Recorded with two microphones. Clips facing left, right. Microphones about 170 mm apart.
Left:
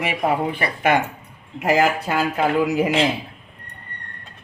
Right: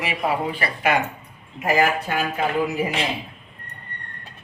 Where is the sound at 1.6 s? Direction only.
85° left.